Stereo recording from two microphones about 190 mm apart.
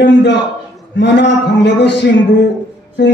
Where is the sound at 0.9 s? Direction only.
70° left (ahead or behind).